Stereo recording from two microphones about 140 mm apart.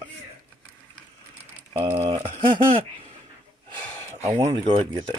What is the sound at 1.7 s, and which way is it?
Speech, 15° right (ahead or behind).